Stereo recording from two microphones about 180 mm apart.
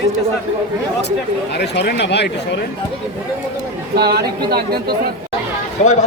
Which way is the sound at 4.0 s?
60° right (ahead or behind).